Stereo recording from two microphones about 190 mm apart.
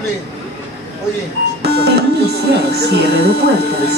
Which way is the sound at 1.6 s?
60° right (ahead or behind).